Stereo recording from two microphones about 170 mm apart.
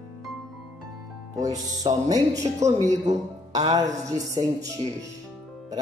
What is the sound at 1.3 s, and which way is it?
Speech, 20° right (ahead or behind).